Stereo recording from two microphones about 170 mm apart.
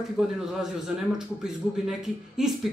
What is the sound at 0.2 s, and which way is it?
Speech, 5° right (ahead or behind).